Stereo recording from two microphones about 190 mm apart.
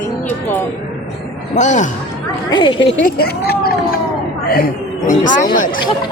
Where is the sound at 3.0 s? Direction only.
50° left (ahead or behind).